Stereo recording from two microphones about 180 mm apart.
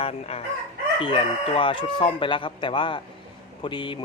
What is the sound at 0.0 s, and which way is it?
Speech, 35° left (ahead or behind).